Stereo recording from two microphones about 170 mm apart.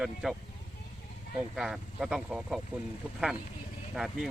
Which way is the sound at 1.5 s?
5° right (ahead or behind).